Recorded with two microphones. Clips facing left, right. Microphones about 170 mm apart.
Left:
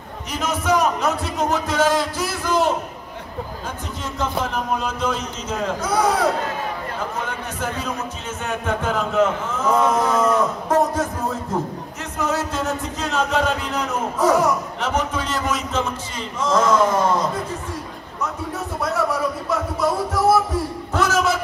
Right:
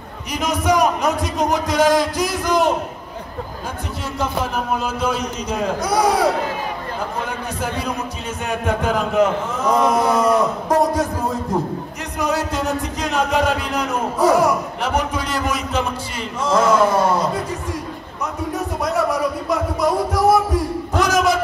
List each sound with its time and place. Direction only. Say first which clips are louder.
0.3 s speech: right 2 dB; 15° right (ahead or behind)
4.2 s speech: right 1 dB; 10° right (ahead or behind)
8.5 s a man's voice: right 3 dB; 15° right (ahead or behind)